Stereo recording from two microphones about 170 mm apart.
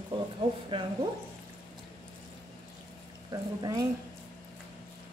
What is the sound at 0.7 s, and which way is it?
Speech, 30° right (ahead or behind).